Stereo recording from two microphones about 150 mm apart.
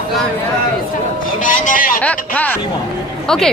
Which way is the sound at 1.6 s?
65° left (ahead or behind).